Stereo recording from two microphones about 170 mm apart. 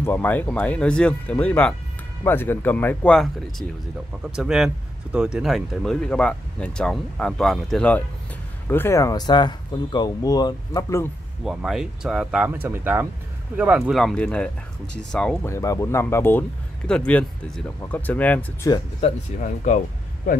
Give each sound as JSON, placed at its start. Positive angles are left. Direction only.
{"t": 0.0, "sound": "speech", "side_deg": 10}
{"t": 11.4, "sound": "speech", "side_deg": -5}
{"t": 15.4, "sound": "speech", "side_deg": 20}
{"t": 18.9, "sound": "speech", "side_deg": 40}